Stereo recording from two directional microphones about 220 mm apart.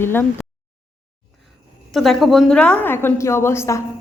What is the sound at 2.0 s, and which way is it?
A woman's voice, centre (ahead or behind).